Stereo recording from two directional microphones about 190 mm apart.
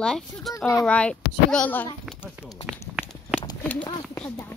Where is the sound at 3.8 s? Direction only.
25° left (ahead or behind).